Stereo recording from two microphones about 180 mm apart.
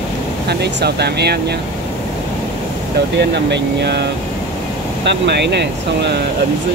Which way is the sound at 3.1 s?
70° right (ahead or behind).